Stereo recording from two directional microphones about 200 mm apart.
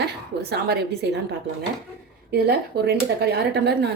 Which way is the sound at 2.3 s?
50° right (ahead or behind).